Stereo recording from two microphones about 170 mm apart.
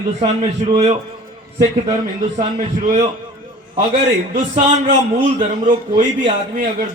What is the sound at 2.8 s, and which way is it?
Speech, 45° right (ahead or behind).